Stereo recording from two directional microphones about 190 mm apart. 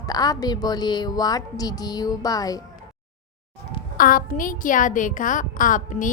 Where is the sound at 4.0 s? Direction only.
45° left (ahead or behind).